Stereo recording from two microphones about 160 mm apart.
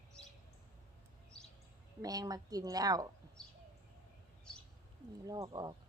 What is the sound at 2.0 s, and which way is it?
A woman's voice, 25° right (ahead or behind).